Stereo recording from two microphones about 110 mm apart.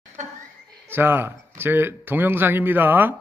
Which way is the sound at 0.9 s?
20° right (ahead or behind).